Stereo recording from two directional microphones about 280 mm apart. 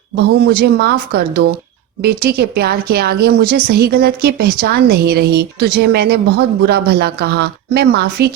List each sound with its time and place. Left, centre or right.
0.2 s a woman's voice: right